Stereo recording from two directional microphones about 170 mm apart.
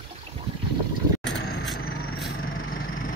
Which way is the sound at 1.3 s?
90° left.